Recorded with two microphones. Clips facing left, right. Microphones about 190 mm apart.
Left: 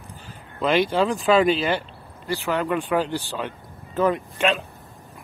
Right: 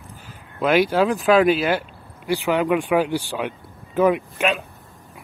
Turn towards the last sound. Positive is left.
turn(degrees=-5)  # may be behind; listen again after turning